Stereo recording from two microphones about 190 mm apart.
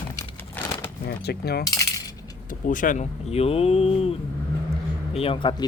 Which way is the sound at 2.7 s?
45° left (ahead or behind).